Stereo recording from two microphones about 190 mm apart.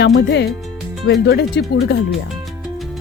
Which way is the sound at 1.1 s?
60° left (ahead or behind).